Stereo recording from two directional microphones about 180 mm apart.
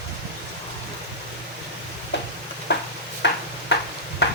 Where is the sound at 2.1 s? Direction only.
75° left (ahead or behind).